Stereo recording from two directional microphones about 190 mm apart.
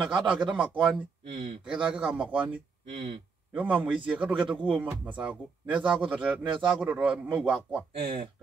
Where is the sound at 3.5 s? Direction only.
5° right (ahead or behind).